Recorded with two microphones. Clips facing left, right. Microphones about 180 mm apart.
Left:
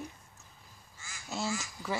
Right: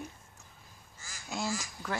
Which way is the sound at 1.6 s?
5° left (ahead or behind).